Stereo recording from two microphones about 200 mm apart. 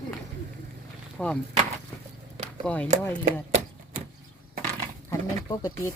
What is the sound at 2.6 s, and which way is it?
Speech, 5° left (ahead or behind).